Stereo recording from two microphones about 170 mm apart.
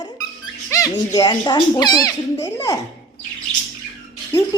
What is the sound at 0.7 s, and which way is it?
A woman's voice, 20° left (ahead or behind).